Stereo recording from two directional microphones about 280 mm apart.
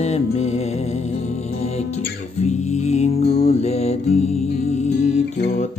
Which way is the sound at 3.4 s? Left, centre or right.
Left.